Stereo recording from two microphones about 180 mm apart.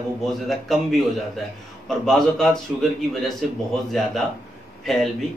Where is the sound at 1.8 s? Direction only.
5° left (ahead or behind).